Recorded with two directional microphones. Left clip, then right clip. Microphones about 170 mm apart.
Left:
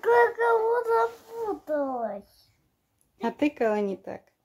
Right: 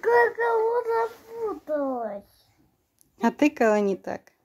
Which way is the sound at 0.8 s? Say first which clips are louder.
Left 1 dB; centre (ahead or behind).